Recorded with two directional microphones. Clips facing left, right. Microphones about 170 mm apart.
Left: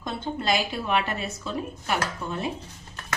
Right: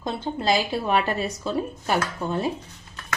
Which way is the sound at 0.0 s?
30° right (ahead or behind).